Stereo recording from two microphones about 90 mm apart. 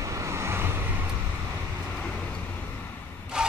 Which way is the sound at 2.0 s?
10° left (ahead or behind).